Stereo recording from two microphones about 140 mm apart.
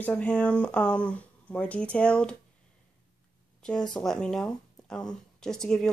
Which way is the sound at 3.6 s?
5° left (ahead or behind).